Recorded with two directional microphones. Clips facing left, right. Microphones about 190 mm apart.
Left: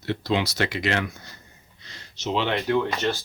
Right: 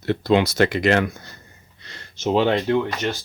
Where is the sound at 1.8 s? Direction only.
55° right (ahead or behind).